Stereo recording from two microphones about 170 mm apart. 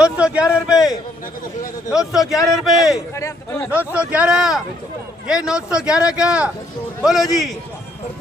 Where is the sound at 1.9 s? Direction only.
Centre (ahead or behind).